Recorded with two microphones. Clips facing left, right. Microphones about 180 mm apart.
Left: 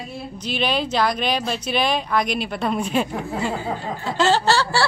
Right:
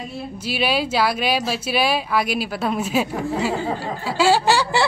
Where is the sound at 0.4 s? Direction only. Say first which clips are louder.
Right 1 dB; 5° right (ahead or behind).